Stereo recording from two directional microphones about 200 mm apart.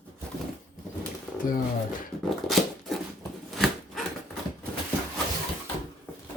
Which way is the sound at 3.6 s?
Centre (ahead or behind).